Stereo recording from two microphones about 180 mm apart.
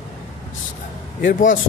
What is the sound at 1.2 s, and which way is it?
Speech, 45° left (ahead or behind).